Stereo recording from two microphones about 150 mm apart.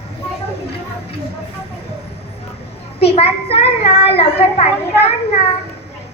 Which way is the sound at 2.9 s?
40° left (ahead or behind).